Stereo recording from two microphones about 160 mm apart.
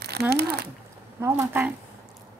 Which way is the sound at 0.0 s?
90° right.